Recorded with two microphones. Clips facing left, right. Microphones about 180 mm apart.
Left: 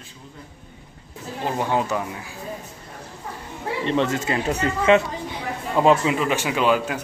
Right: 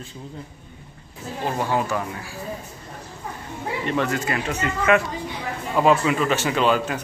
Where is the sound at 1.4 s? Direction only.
20° left (ahead or behind).